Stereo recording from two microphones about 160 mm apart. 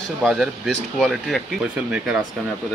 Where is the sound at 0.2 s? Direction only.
Centre (ahead or behind).